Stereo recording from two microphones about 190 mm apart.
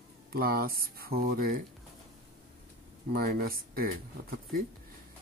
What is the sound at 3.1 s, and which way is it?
Speech, 55° right (ahead or behind).